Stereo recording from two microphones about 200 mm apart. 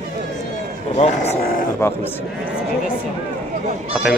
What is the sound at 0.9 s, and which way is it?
Speech, 35° left (ahead or behind).